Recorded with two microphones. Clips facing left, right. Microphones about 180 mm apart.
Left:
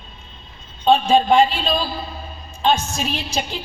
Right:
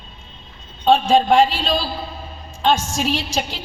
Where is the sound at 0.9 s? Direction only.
90° right.